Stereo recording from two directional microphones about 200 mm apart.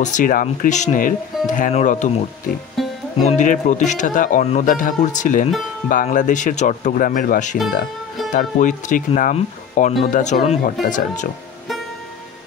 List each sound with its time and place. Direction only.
0.0 s speech: 40° left (ahead or behind)
2.8 s music: centre (ahead or behind)
3.3 s speech: 40° left (ahead or behind)